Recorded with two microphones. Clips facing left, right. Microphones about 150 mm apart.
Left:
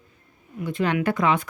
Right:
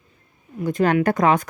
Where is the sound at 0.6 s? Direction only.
45° right (ahead or behind).